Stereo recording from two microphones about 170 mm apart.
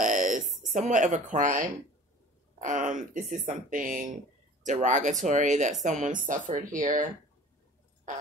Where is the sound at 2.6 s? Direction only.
50° right (ahead or behind).